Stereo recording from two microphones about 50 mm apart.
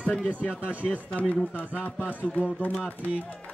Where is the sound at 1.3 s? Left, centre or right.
Left.